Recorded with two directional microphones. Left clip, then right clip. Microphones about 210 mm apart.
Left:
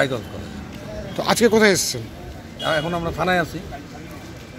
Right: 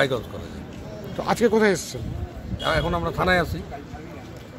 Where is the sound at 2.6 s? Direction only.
5° right (ahead or behind).